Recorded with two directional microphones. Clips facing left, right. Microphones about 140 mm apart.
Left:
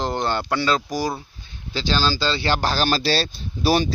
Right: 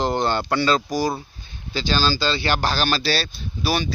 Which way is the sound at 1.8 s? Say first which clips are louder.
Even; 25° left (ahead or behind).